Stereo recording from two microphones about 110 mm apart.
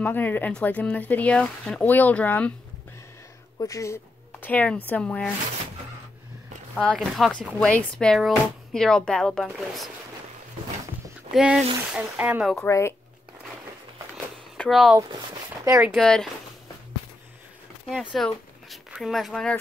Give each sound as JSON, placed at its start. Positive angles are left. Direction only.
{"t": 0.0, "sound": "speech", "side_deg": 15}
{"t": 3.5, "sound": "speech", "side_deg": 30}
{"t": 6.7, "sound": "speech", "side_deg": 10}
{"t": 11.3, "sound": "speech", "side_deg": -5}
{"t": 12.6, "sound": "speech", "side_deg": 25}
{"t": 14.7, "sound": "speech", "side_deg": 0}
{"t": 15.6, "sound": "speech", "side_deg": -30}
{"t": 15.9, "sound": "speech", "side_deg": 5}
{"t": 18.1, "sound": "speech", "side_deg": 0}